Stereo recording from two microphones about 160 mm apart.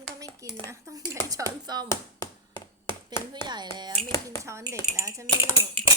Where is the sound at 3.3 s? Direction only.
25° right (ahead or behind).